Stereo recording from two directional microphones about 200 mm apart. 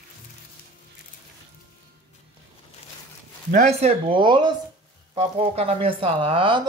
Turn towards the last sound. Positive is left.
turn(degrees=-25)  # may be behind; listen again after turning